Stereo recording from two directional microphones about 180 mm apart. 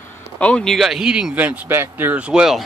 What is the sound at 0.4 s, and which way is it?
Speech, 5° left (ahead or behind).